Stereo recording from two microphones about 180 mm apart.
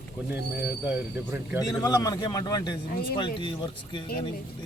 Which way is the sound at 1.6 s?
20° left (ahead or behind).